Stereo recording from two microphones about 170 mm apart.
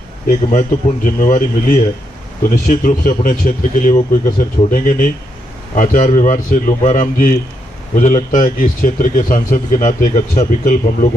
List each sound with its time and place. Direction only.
0.3 s speech: 50° left (ahead or behind)